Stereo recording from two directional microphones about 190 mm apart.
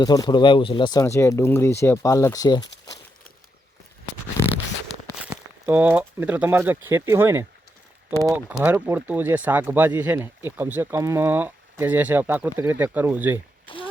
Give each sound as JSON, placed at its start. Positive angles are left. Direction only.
{"t": 0.0, "sound": "speech", "side_deg": 20}
{"t": 4.4, "sound": "zipper", "side_deg": 15}
{"t": 5.3, "sound": "speech", "side_deg": -10}